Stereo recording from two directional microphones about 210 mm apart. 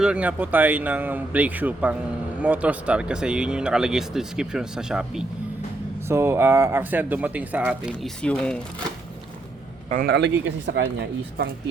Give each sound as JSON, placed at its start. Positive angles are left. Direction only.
{"t": 0.0, "sound": "speech", "side_deg": -5}
{"t": 9.9, "sound": "speech", "side_deg": -45}